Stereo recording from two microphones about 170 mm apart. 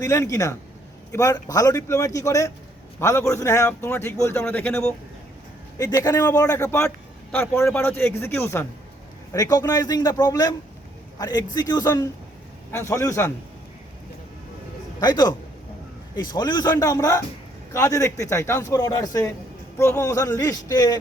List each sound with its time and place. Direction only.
0.0 s a man's voice: 20° left (ahead or behind)
15.0 s a man's voice: 25° left (ahead or behind)